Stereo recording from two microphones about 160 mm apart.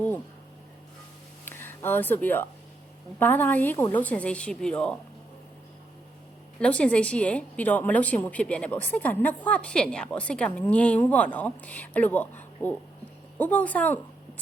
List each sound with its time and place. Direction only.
1.5 s a woman's voice: 15° left (ahead or behind)
6.6 s a woman's voice: 5° left (ahead or behind)